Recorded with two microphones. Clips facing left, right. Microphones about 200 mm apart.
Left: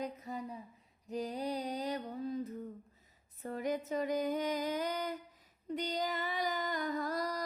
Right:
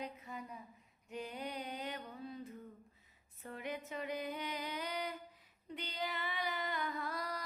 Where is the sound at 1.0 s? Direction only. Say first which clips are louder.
Left 7 dB; 35° left (ahead or behind).